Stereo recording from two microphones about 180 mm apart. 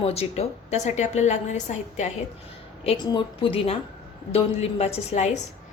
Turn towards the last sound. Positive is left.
turn(degrees=40)  # may be behind; listen again after turning